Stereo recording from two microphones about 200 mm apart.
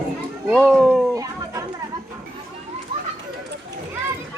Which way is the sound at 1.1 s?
15° right (ahead or behind).